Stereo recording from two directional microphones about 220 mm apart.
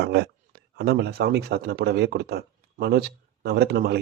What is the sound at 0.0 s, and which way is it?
Speech, 50° right (ahead or behind).